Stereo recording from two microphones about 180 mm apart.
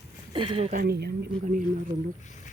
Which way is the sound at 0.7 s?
55° right (ahead or behind).